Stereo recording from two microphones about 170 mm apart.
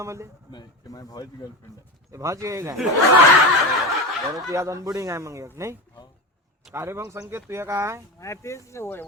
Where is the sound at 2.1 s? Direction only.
20° right (ahead or behind).